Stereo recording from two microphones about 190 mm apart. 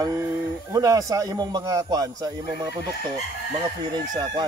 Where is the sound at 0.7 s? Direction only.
20° right (ahead or behind).